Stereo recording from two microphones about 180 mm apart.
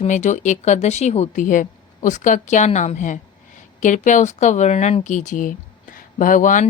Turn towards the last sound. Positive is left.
turn(degrees=45)  # may be behind; listen again after turning